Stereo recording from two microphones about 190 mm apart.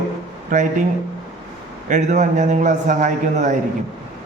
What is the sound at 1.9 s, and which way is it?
A man's voice, 40° right (ahead or behind).